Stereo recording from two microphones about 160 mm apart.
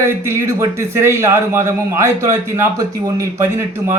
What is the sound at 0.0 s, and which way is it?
A man's voice, 15° right (ahead or behind).